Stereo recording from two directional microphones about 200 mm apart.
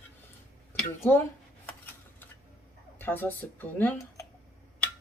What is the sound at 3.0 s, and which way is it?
Speech, 10° left (ahead or behind).